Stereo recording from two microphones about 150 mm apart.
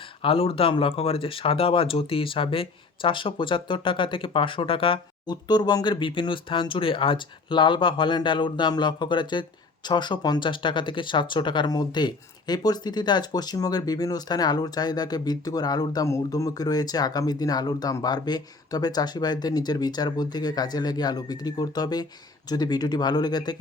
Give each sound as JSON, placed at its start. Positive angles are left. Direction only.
{"t": 0.2, "sound": "speech", "side_deg": 40}